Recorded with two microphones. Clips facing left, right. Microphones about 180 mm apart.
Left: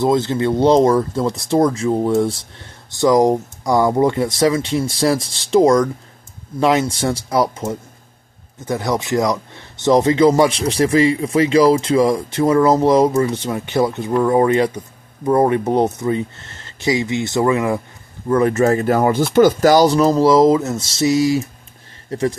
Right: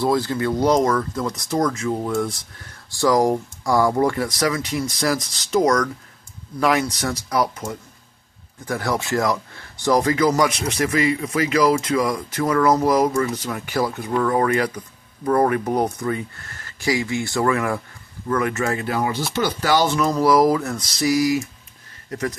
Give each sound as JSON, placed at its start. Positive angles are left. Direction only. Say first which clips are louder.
{"t": 0.0, "sound": "speech", "louder": "left 4 dB", "side_deg": 20}
{"t": 18.3, "sound": "speech", "louder": "left 7 dB", "side_deg": 35}